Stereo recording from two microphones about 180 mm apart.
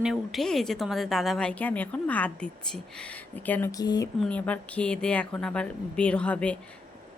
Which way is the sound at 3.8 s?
20° left (ahead or behind).